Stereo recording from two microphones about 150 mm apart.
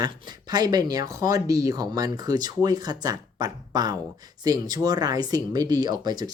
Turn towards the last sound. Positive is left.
turn(degrees=-25)  # may be behind; listen again after turning